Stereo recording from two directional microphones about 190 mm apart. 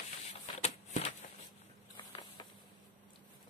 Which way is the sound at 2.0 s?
25° left (ahead or behind).